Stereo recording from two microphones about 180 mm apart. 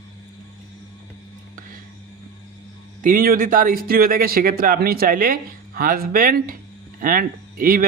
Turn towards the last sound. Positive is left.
turn(degrees=-50)  # may be behind; listen again after turning